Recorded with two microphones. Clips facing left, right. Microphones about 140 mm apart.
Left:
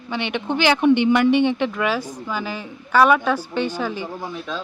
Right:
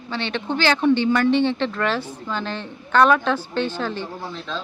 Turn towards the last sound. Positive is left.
turn(degrees=10)  # may be behind; listen again after turning